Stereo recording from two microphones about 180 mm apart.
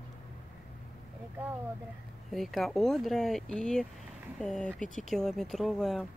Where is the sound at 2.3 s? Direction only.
Centre (ahead or behind).